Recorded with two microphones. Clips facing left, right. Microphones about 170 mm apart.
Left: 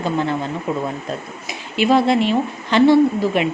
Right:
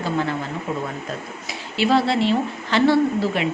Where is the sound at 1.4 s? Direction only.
15° left (ahead or behind).